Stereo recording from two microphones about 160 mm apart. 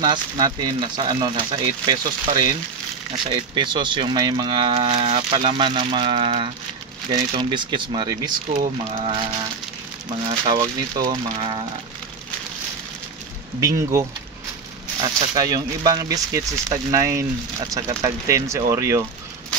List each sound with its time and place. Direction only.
0.0 s speech: 25° right (ahead or behind)
8.5 s speech: 50° right (ahead or behind)
10.2 s speech: 30° right (ahead or behind)
13.6 s speech: 20° right (ahead or behind)